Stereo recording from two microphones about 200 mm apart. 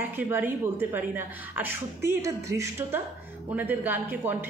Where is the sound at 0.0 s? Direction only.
10° right (ahead or behind).